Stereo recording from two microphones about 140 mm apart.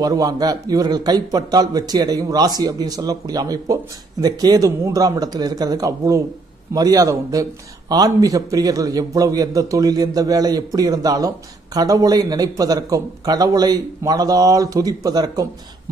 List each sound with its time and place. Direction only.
0.0 s a man's voice: 25° right (ahead or behind)